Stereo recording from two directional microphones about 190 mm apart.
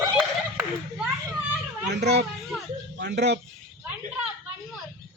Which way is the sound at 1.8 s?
65° right (ahead or behind).